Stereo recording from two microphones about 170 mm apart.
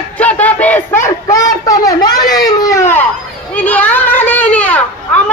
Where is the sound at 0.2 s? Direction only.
10° left (ahead or behind).